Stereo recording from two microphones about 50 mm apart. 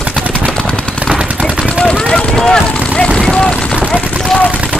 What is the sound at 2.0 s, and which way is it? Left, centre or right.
Vehicle, centre.